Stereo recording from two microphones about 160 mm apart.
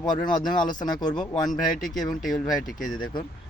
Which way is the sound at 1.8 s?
Centre (ahead or behind).